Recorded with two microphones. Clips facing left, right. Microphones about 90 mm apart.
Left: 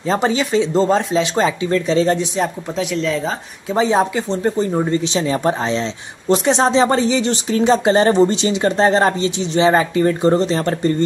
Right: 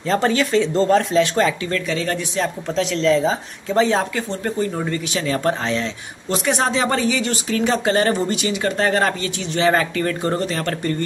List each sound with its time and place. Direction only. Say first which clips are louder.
0.1 s speech: left 1 dB; 15° left (ahead or behind); by 3.3 s centre (ahead or behind)
3.7 s speech: left 2 dB; 15° left (ahead or behind)